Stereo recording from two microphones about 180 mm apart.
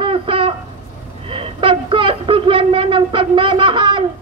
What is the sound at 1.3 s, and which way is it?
A man's voice, 30° right (ahead or behind).